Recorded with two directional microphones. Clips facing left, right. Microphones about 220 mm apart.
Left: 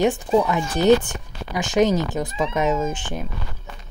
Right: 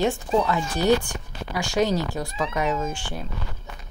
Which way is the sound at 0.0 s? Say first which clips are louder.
Left 4 dB; 15° left (ahead or behind).